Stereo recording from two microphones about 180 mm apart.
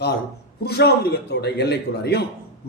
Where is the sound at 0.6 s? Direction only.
65° left (ahead or behind).